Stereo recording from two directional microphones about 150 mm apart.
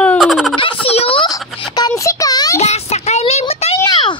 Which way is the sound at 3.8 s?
30° left (ahead or behind).